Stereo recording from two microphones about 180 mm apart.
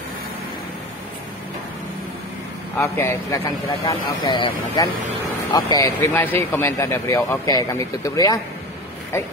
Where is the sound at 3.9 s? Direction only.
25° left (ahead or behind).